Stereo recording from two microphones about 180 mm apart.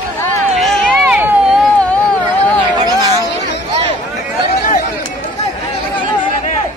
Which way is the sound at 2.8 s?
20° right (ahead or behind).